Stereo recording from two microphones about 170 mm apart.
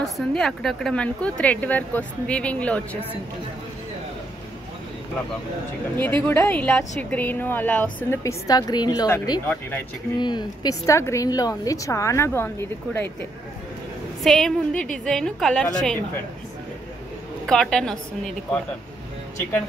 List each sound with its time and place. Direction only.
0.0 s a woman's voice: 5° left (ahead or behind)
5.9 s a woman's voice: 10° left (ahead or behind)
9.5 s a woman's voice: 10° left (ahead or behind)
10.1 s a woman's voice: 25° left (ahead or behind)
14.2 s a woman's voice: centre (ahead or behind)
17.5 s a woman's voice: 5° left (ahead or behind)